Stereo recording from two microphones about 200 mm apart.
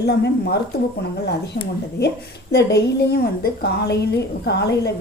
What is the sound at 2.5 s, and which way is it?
A woman's voice, 55° left (ahead or behind).